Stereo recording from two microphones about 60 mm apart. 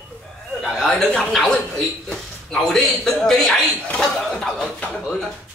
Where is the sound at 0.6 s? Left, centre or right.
Centre.